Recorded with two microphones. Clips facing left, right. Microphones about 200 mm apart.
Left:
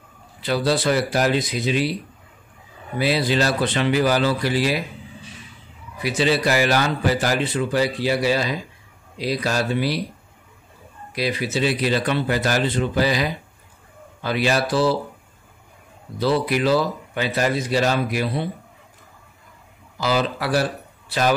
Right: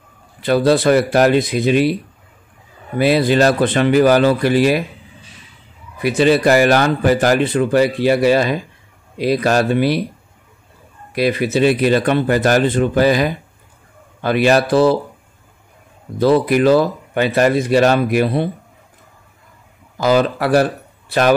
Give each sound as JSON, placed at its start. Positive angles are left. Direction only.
{"t": 0.4, "sound": "speech", "side_deg": -55}
{"t": 3.0, "sound": "speech", "side_deg": -55}
{"t": 5.9, "sound": "speech", "side_deg": -55}
{"t": 11.1, "sound": "speech", "side_deg": -55}
{"t": 16.2, "sound": "speech", "side_deg": -50}
{"t": 20.0, "sound": "speech", "side_deg": -50}